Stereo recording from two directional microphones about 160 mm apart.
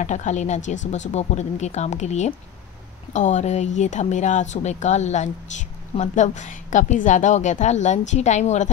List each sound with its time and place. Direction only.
0.0 s speech: 50° left (ahead or behind)